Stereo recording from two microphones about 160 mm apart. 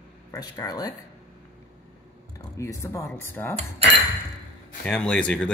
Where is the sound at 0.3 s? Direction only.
20° left (ahead or behind).